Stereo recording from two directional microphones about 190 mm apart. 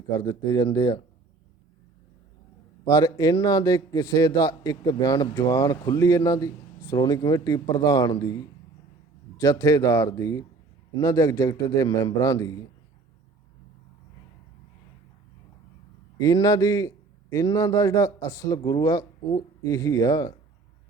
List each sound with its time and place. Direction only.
0.2 s a man's voice: 20° left (ahead or behind)
2.8 s a man's voice: 20° left (ahead or behind)
9.4 s a man's voice: 20° left (ahead or behind)
16.1 s a man's voice: 20° left (ahead or behind)